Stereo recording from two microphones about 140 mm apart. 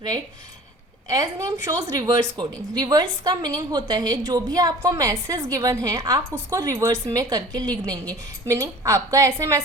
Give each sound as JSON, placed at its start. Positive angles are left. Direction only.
{"t": 1.0, "sound": "a woman's voice", "side_deg": -25}